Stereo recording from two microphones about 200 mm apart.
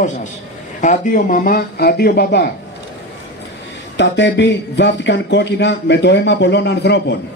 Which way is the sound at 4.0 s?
60° left (ahead or behind).